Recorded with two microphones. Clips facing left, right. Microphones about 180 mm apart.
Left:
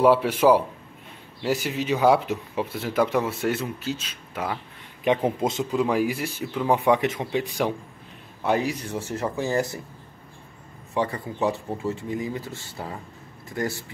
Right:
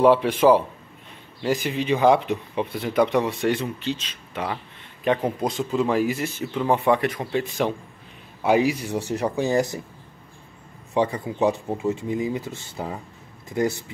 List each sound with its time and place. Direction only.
0.0 s a man's voice: 10° left (ahead or behind)
5.4 s speech: 20° left (ahead or behind)
5.7 s a man's voice: 10° left (ahead or behind)
6.9 s speech: 20° left (ahead or behind)
8.4 s speech: 10° right (ahead or behind)
11.0 s speech: 15° right (ahead or behind)